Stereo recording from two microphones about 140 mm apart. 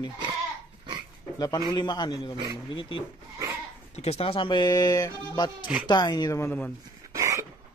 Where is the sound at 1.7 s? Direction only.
30° left (ahead or behind).